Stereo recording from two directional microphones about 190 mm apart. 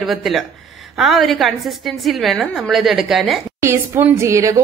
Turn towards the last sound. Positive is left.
turn(degrees=-15)  # may be behind; listen again after turning